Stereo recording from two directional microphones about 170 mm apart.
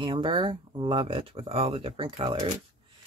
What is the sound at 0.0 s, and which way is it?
Speech, 30° right (ahead or behind).